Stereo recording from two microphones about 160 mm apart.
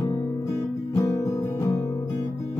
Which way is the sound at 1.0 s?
20° left (ahead or behind).